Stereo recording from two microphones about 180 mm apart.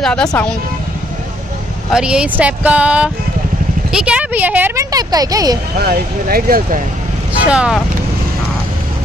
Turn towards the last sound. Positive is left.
turn(degrees=-5)  # may be behind; listen again after turning